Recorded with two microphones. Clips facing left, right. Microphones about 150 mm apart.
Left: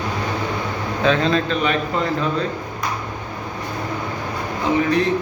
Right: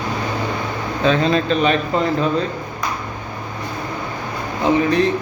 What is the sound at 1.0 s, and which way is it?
Speech, centre (ahead or behind).